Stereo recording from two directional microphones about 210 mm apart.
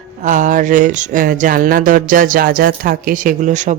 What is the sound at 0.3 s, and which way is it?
Speech, 35° right (ahead or behind).